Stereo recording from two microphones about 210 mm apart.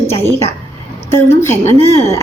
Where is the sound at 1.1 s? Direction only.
10° left (ahead or behind).